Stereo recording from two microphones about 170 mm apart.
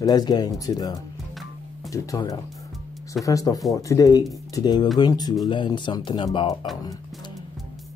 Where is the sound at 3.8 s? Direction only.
20° left (ahead or behind).